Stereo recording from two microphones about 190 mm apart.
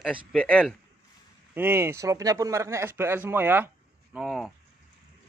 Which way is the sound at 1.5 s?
10° right (ahead or behind).